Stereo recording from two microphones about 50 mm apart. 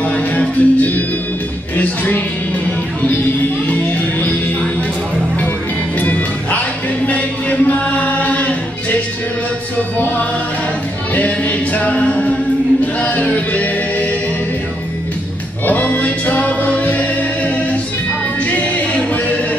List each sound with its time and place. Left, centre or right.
0.0 s music: left
5.9 s music: left
7.1 s chant: left
11.1 s music: left
15.6 s music: left
18.5 s a capella: left